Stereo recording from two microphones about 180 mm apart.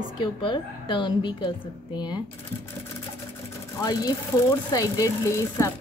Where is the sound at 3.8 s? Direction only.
20° left (ahead or behind).